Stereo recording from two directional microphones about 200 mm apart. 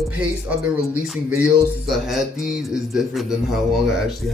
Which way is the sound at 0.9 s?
5° right (ahead or behind).